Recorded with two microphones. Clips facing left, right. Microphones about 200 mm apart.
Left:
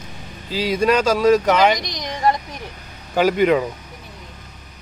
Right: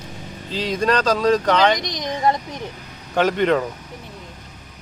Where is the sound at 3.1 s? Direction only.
5° left (ahead or behind).